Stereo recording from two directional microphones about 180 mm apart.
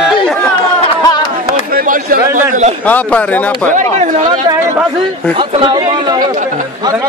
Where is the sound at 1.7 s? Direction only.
50° right (ahead or behind).